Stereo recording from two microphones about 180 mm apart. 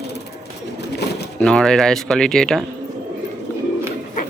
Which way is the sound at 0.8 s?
65° left (ahead or behind).